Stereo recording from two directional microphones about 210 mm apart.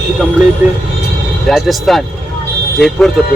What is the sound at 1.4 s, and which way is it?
Speech, centre (ahead or behind).